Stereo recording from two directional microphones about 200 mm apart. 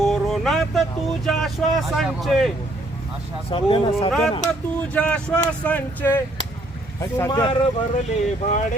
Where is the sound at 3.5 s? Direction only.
25° left (ahead or behind).